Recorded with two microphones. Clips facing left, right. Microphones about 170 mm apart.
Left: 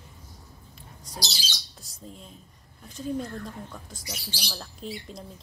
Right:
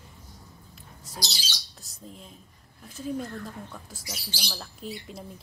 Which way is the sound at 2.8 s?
5° right (ahead or behind).